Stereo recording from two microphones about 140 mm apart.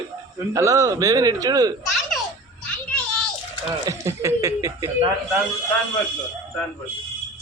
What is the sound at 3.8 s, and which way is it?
A man's voice, 20° right (ahead or behind).